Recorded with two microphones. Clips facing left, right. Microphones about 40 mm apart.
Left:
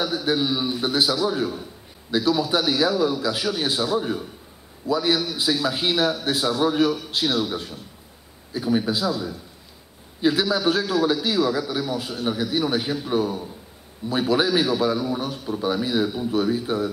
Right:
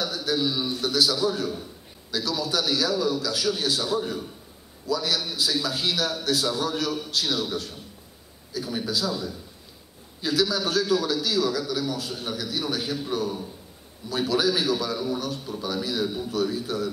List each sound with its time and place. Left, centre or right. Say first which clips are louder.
0.0 s a man's voice: left 3 dB; left
4.8 s a man's voice: left 5 dB; left
9.0 s a man's voice: left 4 dB; centre
10.2 s a man's voice: left 4 dB; left
15.6 s a man's voice: left 5 dB; left